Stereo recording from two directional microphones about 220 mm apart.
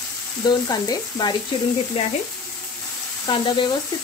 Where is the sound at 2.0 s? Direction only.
30° left (ahead or behind).